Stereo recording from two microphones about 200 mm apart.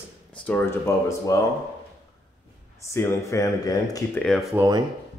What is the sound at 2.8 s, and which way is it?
Speech, 15° left (ahead or behind).